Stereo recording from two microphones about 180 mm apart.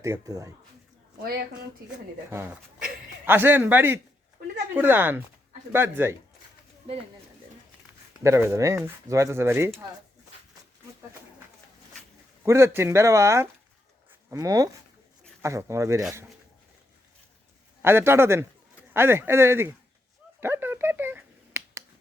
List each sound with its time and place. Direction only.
0.0 s speech: 15° right (ahead or behind)
3.2 s speech: 10° right (ahead or behind)
8.2 s speech: 15° right (ahead or behind)
12.5 s speech: 15° right (ahead or behind)
17.8 s speech: 15° right (ahead or behind)
20.4 s a sound: 10° right (ahead or behind)